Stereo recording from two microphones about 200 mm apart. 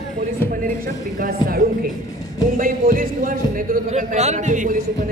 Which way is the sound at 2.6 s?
45° right (ahead or behind).